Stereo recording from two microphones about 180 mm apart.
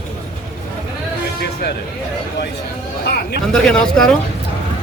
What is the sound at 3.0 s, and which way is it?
Speech, 65° left (ahead or behind).